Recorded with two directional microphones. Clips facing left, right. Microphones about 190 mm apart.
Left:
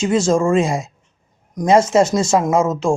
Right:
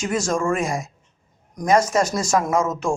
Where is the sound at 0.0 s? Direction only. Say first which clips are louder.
Left 7 dB; 25° left (ahead or behind).